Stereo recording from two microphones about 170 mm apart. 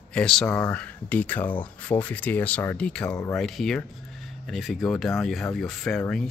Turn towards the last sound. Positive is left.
turn(degrees=5)  # may be behind; listen again after turning